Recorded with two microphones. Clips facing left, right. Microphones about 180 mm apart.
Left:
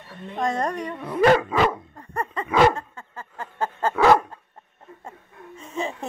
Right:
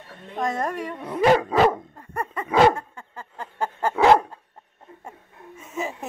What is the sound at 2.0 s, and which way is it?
Dog, 10° right (ahead or behind).